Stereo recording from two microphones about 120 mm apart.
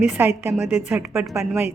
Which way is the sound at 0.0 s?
10° right (ahead or behind).